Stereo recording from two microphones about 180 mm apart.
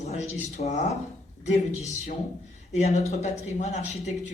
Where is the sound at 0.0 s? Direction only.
40° left (ahead or behind).